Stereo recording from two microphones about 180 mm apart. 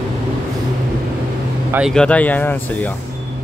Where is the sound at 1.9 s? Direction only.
5° left (ahead or behind).